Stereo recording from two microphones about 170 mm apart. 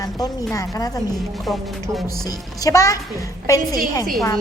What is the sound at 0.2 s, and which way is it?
Speech, 20° left (ahead or behind).